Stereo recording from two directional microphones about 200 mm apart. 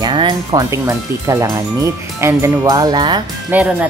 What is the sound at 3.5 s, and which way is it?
Speech, 10° right (ahead or behind).